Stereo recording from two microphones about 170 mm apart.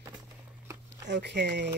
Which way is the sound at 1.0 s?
90° right.